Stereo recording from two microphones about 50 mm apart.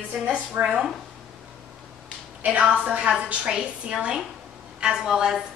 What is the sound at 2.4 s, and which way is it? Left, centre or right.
Speech, right.